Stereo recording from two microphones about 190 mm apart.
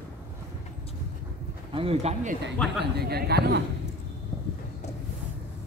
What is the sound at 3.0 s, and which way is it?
Speech, 55° right (ahead or behind).